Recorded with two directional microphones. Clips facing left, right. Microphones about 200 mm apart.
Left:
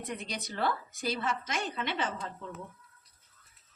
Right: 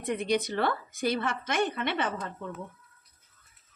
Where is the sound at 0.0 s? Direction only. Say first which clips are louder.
Right 11 dB; 55° right (ahead or behind).